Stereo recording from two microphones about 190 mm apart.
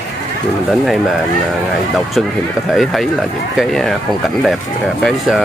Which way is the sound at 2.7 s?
Centre (ahead or behind).